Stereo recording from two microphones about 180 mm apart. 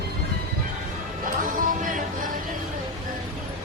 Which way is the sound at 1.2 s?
50° right (ahead or behind).